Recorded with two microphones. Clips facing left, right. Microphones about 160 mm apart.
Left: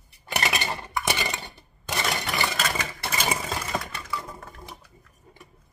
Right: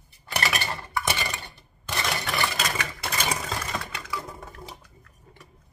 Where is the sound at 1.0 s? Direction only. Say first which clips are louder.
Left 1 dB; 20° left (ahead or behind).